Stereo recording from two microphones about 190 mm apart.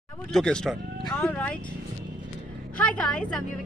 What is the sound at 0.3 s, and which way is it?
A woman's voice, 5° left (ahead or behind).